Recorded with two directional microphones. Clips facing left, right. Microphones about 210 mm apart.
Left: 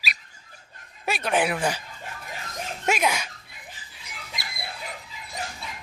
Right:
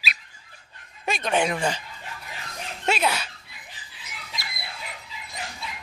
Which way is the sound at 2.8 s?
10° left (ahead or behind).